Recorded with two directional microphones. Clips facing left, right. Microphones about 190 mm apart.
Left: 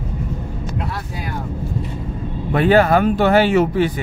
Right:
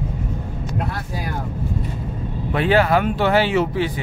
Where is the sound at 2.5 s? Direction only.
45° left (ahead or behind).